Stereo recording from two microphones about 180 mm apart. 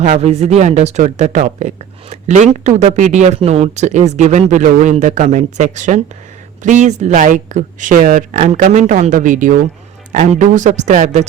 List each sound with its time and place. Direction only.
0.0 s a woman's voice: 40° right (ahead or behind)